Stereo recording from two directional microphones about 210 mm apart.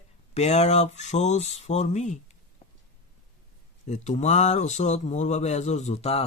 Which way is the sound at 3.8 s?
35° left (ahead or behind).